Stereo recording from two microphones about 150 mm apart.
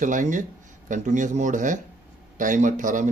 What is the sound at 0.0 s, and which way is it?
Speech, 60° right (ahead or behind).